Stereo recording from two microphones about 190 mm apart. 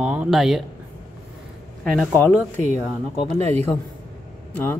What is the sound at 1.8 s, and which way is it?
Speech, 5° left (ahead or behind).